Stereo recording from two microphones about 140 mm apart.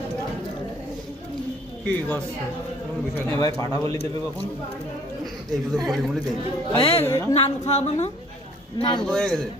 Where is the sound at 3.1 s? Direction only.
20° left (ahead or behind).